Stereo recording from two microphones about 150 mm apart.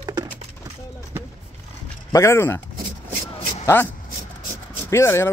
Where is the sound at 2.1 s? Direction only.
15° left (ahead or behind).